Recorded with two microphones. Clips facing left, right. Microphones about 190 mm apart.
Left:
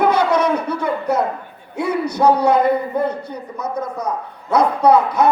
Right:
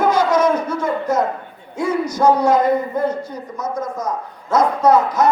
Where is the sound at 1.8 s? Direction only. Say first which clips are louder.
Even; 65° left (ahead or behind).